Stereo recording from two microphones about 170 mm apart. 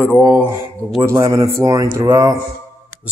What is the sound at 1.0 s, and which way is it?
Speech, 20° right (ahead or behind).